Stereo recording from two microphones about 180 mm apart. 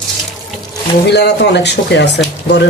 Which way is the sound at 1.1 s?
70° left (ahead or behind).